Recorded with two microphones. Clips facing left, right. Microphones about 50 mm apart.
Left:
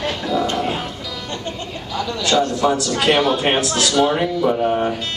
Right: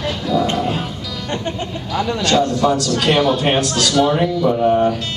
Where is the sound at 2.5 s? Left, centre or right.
Centre.